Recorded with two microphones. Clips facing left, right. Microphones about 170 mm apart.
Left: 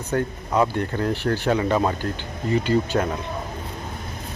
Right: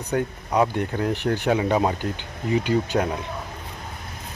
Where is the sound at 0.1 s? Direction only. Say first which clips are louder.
Even; 15° right (ahead or behind).